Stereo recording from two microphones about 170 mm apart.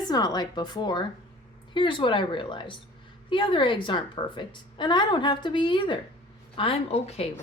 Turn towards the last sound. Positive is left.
turn(degrees=35)  # may be behind; listen again after turning